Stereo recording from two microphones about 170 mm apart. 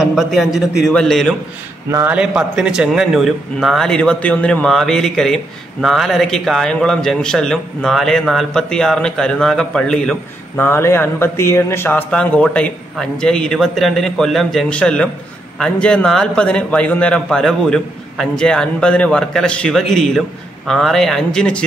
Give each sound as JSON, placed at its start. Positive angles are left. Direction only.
{"t": 0.0, "sound": "a man's voice", "side_deg": 0}
{"t": 1.9, "sound": "a man's voice", "side_deg": -20}
{"t": 2.1, "sound": "a man's voice", "side_deg": -5}